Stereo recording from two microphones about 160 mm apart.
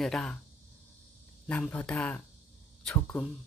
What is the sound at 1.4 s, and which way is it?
Speech, 5° left (ahead or behind).